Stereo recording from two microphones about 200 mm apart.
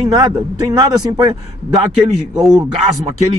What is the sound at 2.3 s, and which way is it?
Speech, centre (ahead or behind).